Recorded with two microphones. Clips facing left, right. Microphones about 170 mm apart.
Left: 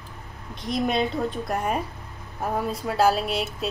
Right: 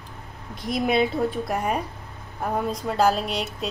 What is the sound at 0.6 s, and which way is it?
A woman's voice, 5° right (ahead or behind).